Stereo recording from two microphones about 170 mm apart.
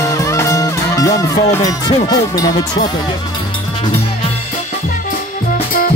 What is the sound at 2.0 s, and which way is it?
Speech, 20° left (ahead or behind).